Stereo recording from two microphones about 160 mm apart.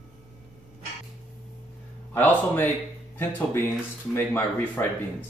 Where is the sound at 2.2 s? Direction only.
10° left (ahead or behind).